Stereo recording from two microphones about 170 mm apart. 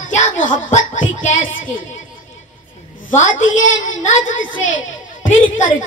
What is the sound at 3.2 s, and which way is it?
Speech, 50° left (ahead or behind).